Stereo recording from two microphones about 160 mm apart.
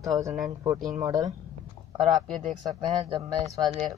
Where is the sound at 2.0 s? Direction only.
Centre (ahead or behind).